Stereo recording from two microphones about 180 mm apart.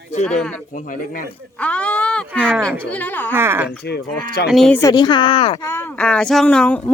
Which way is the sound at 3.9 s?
65° left (ahead or behind).